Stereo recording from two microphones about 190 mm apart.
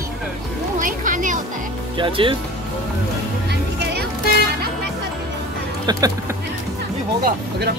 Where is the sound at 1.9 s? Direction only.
25° right (ahead or behind).